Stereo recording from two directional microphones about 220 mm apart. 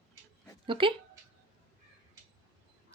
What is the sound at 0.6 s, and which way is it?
Speech, 25° right (ahead or behind).